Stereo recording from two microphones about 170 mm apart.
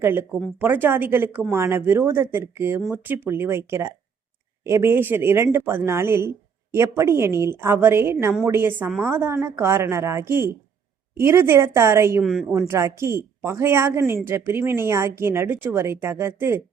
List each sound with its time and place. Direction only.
0.0 s speech: 15° right (ahead or behind)
12.2 s a woman's voice: centre (ahead or behind)
12.5 s speech: 15° right (ahead or behind)